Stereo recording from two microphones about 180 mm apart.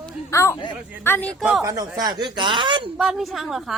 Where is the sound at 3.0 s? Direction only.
Centre (ahead or behind).